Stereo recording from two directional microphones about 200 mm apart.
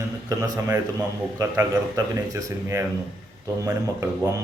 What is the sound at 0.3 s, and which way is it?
Speech, 20° right (ahead or behind).